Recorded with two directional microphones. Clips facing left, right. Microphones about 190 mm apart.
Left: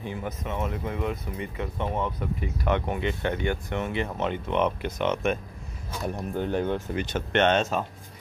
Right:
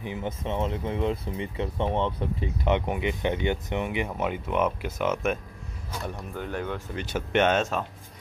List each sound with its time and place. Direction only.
0.0 s speech: 20° right (ahead or behind); by 5.4 s 5° right (ahead or behind)
6.1 s speech: 25° left (ahead or behind)
7.1 s speech: 5° right (ahead or behind)